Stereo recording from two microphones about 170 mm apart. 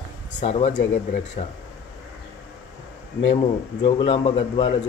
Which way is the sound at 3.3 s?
30° left (ahead or behind).